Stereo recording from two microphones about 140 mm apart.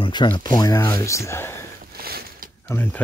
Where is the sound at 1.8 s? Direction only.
90° right.